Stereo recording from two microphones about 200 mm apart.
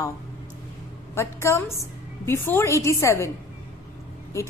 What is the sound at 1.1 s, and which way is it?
A woman's voice, 15° left (ahead or behind).